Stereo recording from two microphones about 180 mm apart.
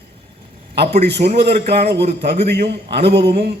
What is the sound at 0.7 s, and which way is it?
A man's voice, 65° right (ahead or behind).